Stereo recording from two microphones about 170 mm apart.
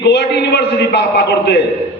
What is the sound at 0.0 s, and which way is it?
A man's voice, 80° left.